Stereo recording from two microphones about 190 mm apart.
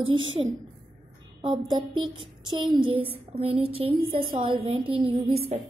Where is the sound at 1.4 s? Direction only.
25° right (ahead or behind).